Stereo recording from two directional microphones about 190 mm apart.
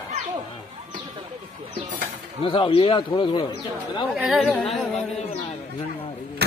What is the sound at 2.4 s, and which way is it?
Speech, 30° left (ahead or behind).